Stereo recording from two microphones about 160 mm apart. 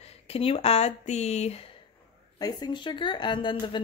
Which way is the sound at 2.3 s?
25° left (ahead or behind).